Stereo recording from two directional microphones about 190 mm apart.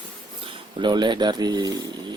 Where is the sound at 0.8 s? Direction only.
25° right (ahead or behind).